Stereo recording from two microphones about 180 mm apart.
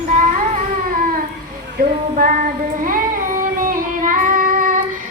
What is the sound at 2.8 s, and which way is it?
Music, 50° right (ahead or behind).